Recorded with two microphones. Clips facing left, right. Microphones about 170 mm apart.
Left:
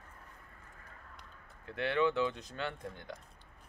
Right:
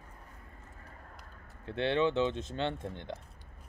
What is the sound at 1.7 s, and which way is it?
Speech, 25° right (ahead or behind).